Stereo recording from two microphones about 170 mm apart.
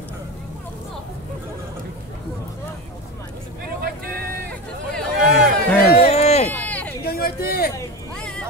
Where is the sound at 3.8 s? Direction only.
65° right (ahead or behind).